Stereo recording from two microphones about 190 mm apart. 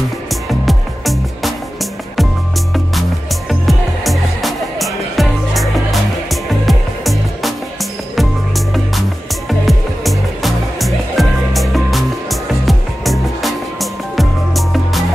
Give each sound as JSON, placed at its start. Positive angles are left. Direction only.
{"t": 0.3, "sound": "music", "side_deg": 0}